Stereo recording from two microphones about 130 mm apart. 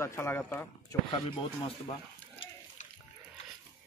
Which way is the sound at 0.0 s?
20° left (ahead or behind).